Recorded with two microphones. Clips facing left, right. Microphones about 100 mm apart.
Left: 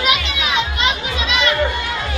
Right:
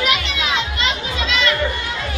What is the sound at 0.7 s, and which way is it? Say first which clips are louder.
Music: left 2 dB; 20° left (ahead or behind).